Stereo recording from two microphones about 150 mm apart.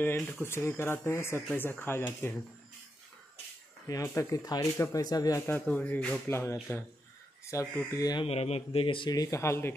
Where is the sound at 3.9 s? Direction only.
20° left (ahead or behind).